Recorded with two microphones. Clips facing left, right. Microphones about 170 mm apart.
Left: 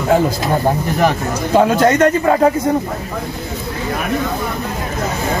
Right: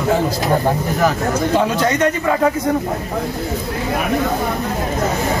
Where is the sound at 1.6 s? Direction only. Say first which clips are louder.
Left 9 dB; 50° left (ahead or behind).